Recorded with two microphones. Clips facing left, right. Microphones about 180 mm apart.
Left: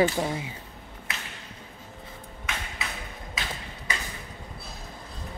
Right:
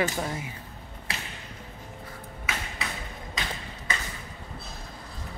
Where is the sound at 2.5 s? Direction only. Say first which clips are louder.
Right 1 dB; 5° right (ahead or behind).